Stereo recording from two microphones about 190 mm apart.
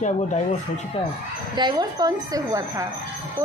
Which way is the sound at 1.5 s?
20° right (ahead or behind).